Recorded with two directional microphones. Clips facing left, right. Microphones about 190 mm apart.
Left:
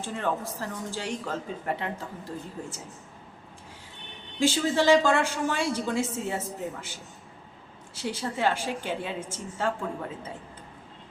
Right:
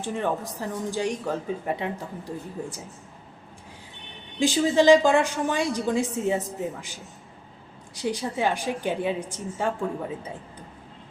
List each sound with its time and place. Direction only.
0.0 s speech: 15° right (ahead or behind)
4.4 s speech: 15° right (ahead or behind)
7.9 s speech: 15° right (ahead or behind)